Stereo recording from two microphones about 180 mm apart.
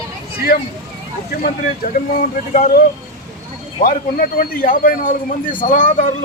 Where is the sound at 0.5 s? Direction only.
55° left (ahead or behind).